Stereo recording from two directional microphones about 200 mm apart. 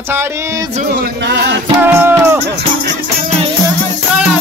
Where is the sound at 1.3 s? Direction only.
55° right (ahead or behind).